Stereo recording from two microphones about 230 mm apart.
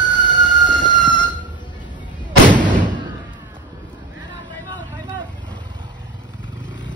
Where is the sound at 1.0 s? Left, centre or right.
Centre.